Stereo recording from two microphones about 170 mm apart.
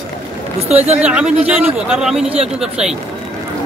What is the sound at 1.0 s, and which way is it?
A man's voice, 5° right (ahead or behind).